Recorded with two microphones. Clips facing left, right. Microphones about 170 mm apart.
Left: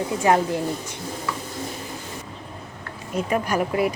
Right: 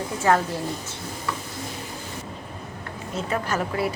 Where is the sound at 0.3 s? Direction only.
20° left (ahead or behind).